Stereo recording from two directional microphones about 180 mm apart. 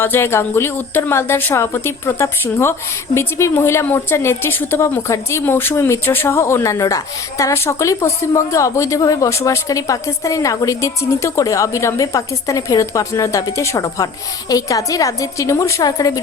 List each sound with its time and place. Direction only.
0.0 s a woman's voice: 15° left (ahead or behind)